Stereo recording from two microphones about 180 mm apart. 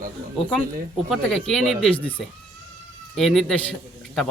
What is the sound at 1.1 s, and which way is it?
Speech, centre (ahead or behind).